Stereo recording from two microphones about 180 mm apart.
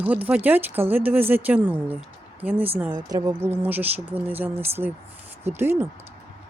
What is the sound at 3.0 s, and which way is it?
Speech, 20° right (ahead or behind).